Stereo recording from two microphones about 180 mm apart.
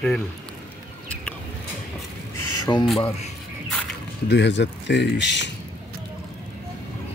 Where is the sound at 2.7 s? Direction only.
25° left (ahead or behind).